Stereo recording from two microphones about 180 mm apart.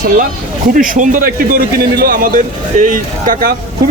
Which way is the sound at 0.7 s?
50° right (ahead or behind).